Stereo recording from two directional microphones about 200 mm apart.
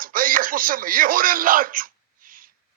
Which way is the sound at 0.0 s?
45° right (ahead or behind).